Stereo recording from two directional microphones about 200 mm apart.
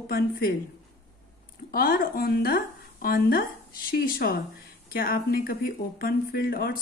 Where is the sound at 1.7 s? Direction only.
45° left (ahead or behind).